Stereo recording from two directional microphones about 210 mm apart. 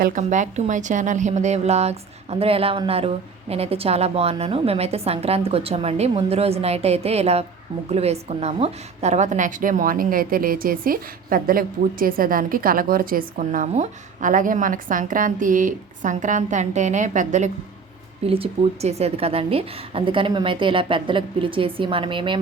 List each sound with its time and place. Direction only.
0.0 s a woman's voice: 35° right (ahead or behind)